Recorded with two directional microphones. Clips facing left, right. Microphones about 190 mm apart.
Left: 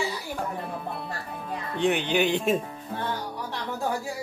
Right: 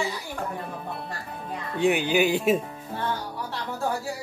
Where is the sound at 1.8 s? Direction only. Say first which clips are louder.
Right 2 dB; 10° right (ahead or behind).